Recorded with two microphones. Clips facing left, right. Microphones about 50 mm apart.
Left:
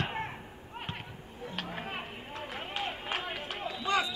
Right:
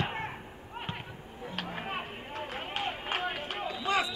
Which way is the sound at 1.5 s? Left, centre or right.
Centre.